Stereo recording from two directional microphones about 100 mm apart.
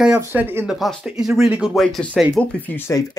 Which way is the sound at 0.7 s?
Centre (ahead or behind).